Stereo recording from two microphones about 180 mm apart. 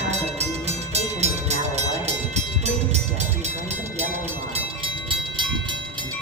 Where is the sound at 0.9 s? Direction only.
40° right (ahead or behind).